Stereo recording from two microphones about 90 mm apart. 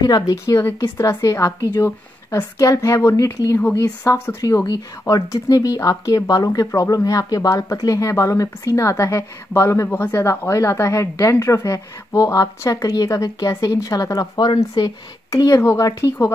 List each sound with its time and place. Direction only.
0.0 s a woman's voice: 45° left (ahead or behind)
3.5 s a woman's voice: 25° left (ahead or behind); by 14.9 s 45° left (ahead or behind)
15.3 s speech: 35° left (ahead or behind)